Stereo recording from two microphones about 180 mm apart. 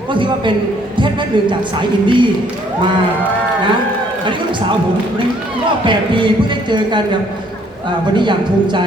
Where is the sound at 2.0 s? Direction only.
25° right (ahead or behind).